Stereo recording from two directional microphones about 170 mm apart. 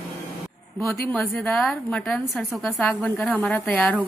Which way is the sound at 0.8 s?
10° left (ahead or behind).